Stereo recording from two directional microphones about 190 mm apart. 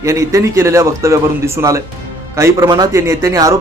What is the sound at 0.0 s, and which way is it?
Speech, 15° right (ahead or behind).